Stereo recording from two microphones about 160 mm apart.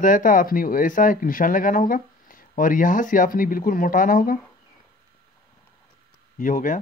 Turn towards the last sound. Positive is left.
turn(degrees=55)  # may be behind; listen again after turning